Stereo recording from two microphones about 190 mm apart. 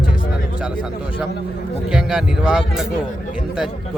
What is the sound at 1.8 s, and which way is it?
A man's voice, 5° right (ahead or behind).